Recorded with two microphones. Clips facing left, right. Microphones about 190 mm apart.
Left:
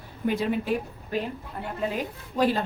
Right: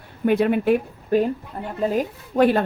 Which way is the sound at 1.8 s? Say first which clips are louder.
Right 8 dB; 45° right (ahead or behind).